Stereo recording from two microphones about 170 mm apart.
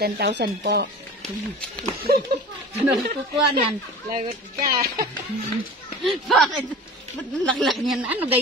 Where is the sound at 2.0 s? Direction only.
65° right (ahead or behind).